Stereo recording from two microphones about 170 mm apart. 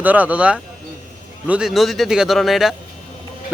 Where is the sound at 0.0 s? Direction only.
10° right (ahead or behind).